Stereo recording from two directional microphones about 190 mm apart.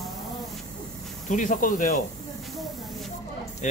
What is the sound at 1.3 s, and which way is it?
Speech, 40° left (ahead or behind).